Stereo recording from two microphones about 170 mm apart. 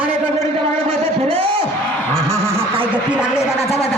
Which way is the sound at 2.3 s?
15° right (ahead or behind).